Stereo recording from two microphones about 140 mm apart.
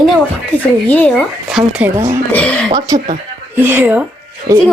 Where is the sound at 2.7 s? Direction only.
25° right (ahead or behind).